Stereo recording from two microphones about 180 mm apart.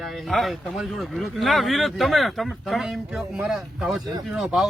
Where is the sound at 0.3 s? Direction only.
Centre (ahead or behind).